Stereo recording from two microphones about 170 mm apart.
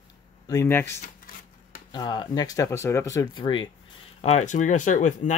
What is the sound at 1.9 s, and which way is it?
Speech, 25° left (ahead or behind).